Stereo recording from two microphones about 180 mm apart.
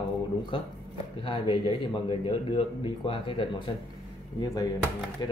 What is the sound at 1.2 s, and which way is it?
Speech, 30° left (ahead or behind).